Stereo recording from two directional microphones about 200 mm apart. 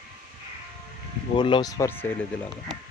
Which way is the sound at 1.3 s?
25° left (ahead or behind).